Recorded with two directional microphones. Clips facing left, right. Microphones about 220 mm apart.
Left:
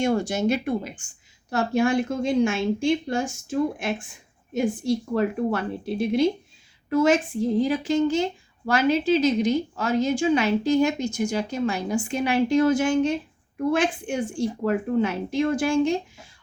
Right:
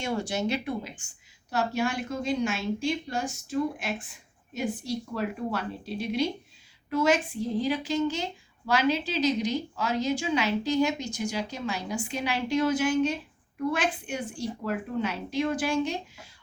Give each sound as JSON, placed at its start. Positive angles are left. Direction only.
{"t": 0.0, "sound": "a woman's voice", "side_deg": 45}